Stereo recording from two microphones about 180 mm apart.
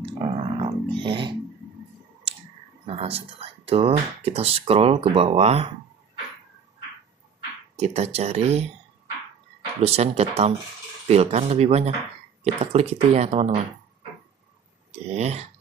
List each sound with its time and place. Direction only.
0.0 s a sound: 30° right (ahead or behind)
2.9 s speech: 35° right (ahead or behind)
7.3 s speech: 35° right (ahead or behind)
9.8 s speech: 35° right (ahead or behind)
14.9 s speech: 35° right (ahead or behind)